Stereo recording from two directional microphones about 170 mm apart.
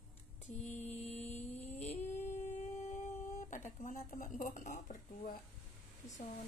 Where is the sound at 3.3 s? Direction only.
50° left (ahead or behind).